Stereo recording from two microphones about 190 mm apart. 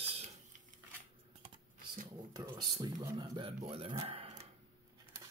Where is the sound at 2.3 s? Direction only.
20° right (ahead or behind).